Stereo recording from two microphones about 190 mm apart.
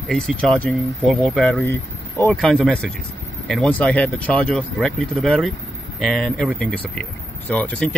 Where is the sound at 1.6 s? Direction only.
15° left (ahead or behind).